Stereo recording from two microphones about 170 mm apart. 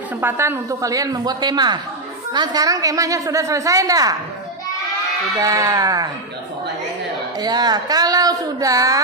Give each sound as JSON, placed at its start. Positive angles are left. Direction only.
{"t": 0.2, "sound": "a woman's voice", "side_deg": -15}
{"t": 5.4, "sound": "a woman's voice", "side_deg": -20}
{"t": 7.3, "sound": "a woman's voice", "side_deg": -25}